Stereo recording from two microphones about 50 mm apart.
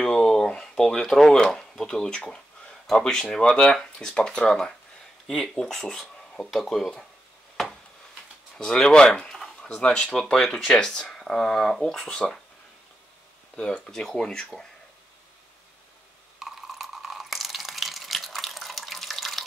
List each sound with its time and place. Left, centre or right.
0.0 s a sound: centre
1.4 s speech: centre
8.5 s speech: centre
12.1 s speech: centre
13.6 s speech: centre
16.3 s a sound: centre